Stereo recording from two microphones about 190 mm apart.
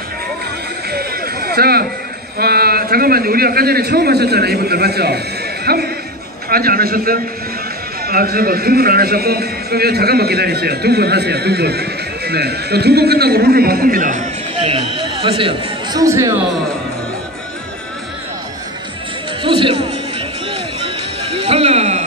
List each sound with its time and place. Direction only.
0.8 s chatter: 55° right (ahead or behind)
2.3 s a man's voice: 55° right (ahead or behind); by 16.3 s 15° right (ahead or behind)
19.4 s music: 25° right (ahead or behind)
21.4 s music: 30° right (ahead or behind)